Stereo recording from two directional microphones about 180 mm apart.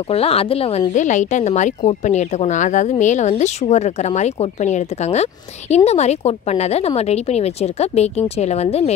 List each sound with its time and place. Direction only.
0.1 s speech: 35° left (ahead or behind)